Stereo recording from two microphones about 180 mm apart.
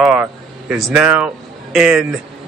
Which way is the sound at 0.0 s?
10° right (ahead or behind).